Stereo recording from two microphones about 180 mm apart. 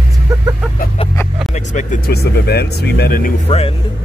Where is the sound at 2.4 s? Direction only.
65° left (ahead or behind).